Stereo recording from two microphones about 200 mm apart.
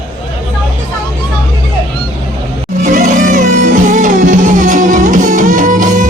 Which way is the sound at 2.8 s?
40° right (ahead or behind).